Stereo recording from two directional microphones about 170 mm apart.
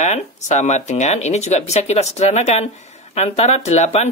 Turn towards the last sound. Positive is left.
turn(degrees=40)  # may be behind; listen again after turning